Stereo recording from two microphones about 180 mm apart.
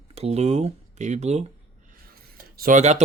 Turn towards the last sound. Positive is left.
turn(degrees=-40)  # may be behind; listen again after turning